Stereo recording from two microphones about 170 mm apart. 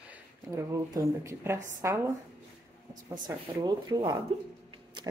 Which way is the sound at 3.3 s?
25° right (ahead or behind).